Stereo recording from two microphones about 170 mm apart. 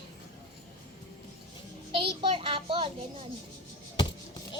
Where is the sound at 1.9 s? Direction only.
30° right (ahead or behind).